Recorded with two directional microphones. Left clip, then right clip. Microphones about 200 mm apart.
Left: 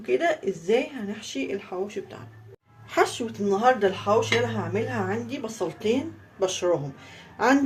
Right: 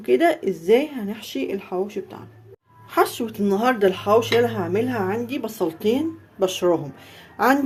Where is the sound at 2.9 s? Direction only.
25° right (ahead or behind).